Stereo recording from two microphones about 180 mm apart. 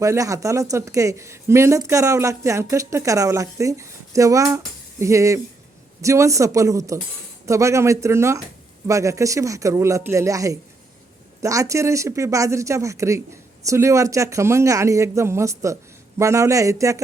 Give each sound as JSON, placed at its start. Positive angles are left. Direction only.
{"t": 0.0, "sound": "a woman's voice", "side_deg": -15}